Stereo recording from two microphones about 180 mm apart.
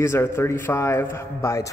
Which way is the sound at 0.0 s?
15° left (ahead or behind).